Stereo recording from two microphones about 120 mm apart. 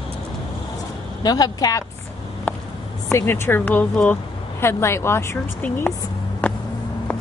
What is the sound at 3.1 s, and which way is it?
Speech, 20° left (ahead or behind).